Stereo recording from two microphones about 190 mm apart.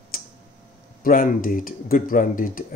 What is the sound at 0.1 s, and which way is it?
Tick-tock, 50° left (ahead or behind).